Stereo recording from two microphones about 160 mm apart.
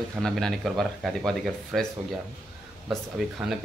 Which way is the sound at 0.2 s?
Centre (ahead or behind).